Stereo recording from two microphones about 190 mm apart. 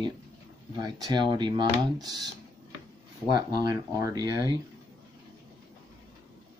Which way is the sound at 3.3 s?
20° right (ahead or behind).